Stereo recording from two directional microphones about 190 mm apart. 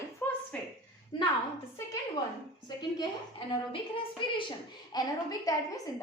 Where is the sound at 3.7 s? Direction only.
25° left (ahead or behind).